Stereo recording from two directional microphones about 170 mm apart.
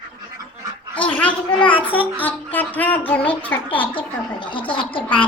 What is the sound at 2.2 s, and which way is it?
A child's voice, 10° left (ahead or behind).